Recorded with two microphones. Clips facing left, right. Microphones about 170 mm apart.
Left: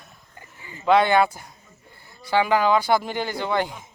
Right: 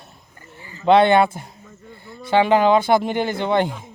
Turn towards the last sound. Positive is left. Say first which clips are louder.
# right 5 dB
turn(degrees=-25)  # may be behind; listen again after turning